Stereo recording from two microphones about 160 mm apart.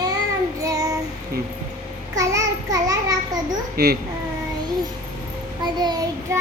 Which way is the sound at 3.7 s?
75° right (ahead or behind).